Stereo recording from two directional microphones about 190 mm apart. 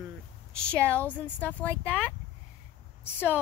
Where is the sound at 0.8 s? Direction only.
10° left (ahead or behind).